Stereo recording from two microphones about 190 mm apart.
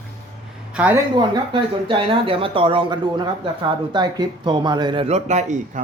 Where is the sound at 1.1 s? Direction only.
25° right (ahead or behind).